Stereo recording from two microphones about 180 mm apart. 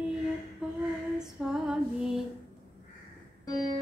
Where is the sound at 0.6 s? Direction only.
5° right (ahead or behind).